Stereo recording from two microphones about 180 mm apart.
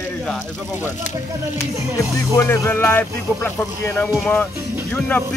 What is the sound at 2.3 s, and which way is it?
Speech, 15° left (ahead or behind).